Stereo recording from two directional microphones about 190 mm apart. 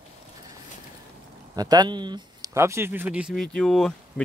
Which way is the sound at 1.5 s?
20° right (ahead or behind).